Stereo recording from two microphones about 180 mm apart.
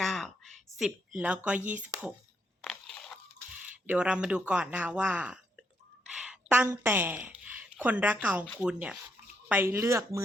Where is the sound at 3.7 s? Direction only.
5° right (ahead or behind).